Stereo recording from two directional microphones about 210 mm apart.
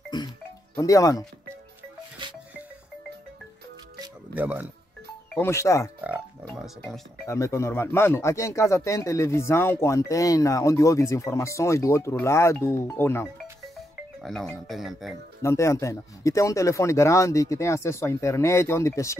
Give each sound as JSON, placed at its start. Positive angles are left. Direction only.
{"t": 0.1, "sound": "speech", "side_deg": 20}
{"t": 4.4, "sound": "speech", "side_deg": -10}
{"t": 5.3, "sound": "speech", "side_deg": 10}
{"t": 5.9, "sound": "speech", "side_deg": -5}
{"t": 7.2, "sound": "speech", "side_deg": 15}
{"t": 15.4, "sound": "speech", "side_deg": 15}